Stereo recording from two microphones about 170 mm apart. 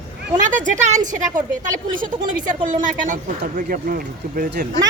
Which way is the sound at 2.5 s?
50° right (ahead or behind).